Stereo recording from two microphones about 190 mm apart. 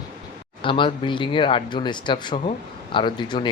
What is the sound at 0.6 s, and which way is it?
Speech, 25° left (ahead or behind).